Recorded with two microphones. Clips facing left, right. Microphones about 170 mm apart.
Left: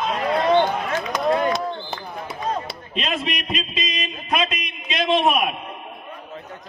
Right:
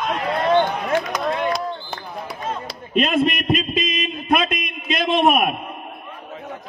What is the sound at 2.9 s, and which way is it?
Speech, 50° right (ahead or behind).